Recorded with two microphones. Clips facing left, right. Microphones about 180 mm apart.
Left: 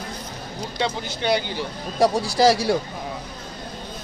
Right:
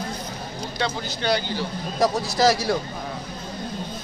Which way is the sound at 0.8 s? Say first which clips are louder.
Left 2 dB; 20° left (ahead or behind).